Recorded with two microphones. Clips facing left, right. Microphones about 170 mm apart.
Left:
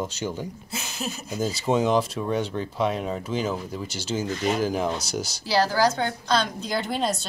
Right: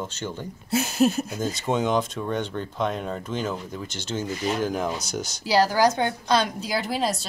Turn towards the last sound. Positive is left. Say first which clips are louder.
# even
turn(degrees=0)  # may be behind; listen again after turning